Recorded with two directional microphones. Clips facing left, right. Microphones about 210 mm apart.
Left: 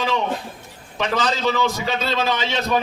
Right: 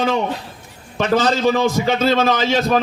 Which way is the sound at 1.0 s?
50° right (ahead or behind).